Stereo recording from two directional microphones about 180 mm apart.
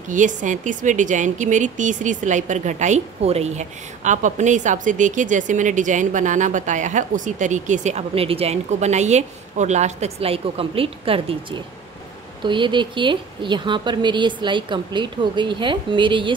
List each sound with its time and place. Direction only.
0.1 s a woman's voice: 45° right (ahead or behind); by 16.3 s 25° right (ahead or behind)